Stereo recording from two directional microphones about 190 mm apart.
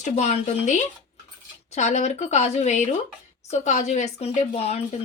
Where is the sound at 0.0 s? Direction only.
35° left (ahead or behind).